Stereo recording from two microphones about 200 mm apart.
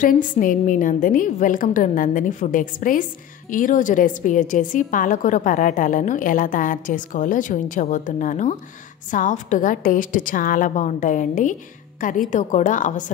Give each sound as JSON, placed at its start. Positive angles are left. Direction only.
{"t": 0.0, "sound": "a woman's voice", "side_deg": 40}